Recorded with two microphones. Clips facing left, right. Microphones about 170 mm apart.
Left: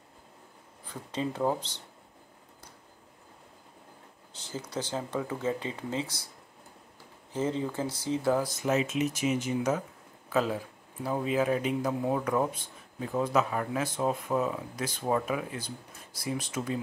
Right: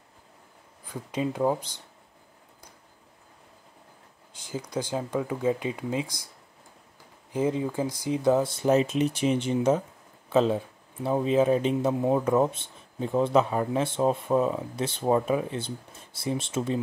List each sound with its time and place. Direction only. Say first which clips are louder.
0.8 s speech: right 4 dB; 10° right (ahead or behind)
4.3 s speech: right 4 dB; 10° right (ahead or behind)
7.3 s speech: right 4 dB; 15° right (ahead or behind)